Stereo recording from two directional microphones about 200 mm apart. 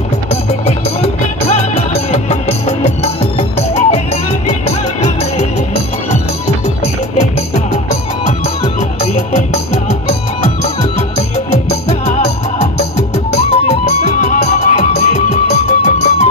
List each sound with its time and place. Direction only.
0.3 s music: 30° left (ahead or behind)